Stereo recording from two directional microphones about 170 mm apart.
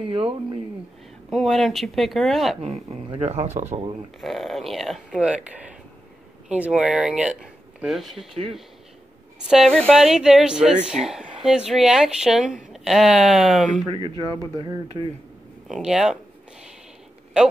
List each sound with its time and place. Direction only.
0.0 s speech: 30° right (ahead or behind)
1.3 s speech: centre (ahead or behind)
2.6 s speech: 35° right (ahead or behind)
4.2 s speech: centre (ahead or behind)
9.5 s speech: centre (ahead or behind)
13.8 s speech: 30° right (ahead or behind)
15.7 s speech: 5° right (ahead or behind)